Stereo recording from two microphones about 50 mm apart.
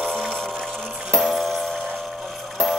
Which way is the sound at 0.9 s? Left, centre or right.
Centre.